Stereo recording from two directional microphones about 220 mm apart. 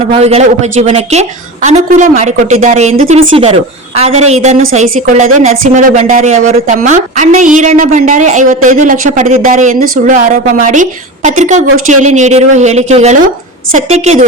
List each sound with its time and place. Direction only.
0.1 s a woman's voice: 30° right (ahead or behind)